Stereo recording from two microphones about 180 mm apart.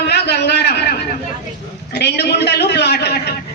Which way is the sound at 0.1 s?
65° left (ahead or behind).